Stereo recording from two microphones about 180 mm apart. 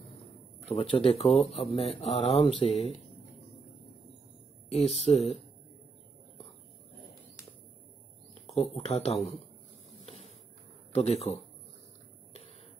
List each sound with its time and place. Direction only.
0.7 s speech: 30° left (ahead or behind)
4.6 s speech: 35° left (ahead or behind)
8.5 s speech: 35° left (ahead or behind)
10.9 s speech: 35° left (ahead or behind)